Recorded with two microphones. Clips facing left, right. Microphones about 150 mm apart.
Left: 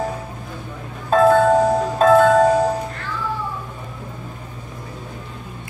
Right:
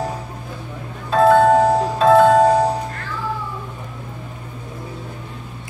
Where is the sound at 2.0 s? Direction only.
45° left (ahead or behind).